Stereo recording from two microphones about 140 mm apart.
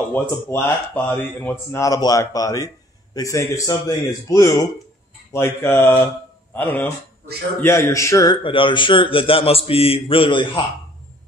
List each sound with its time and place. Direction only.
0.1 s a man's voice: 15° left (ahead or behind)
8.5 s a man's voice: 35° left (ahead or behind)